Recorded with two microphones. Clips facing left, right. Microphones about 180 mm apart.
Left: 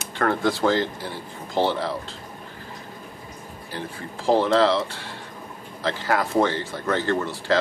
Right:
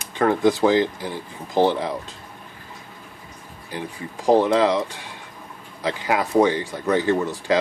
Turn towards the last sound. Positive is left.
turn(degrees=-15)  # may be behind; listen again after turning